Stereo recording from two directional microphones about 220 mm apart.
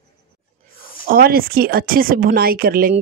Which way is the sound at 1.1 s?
40° right (ahead or behind).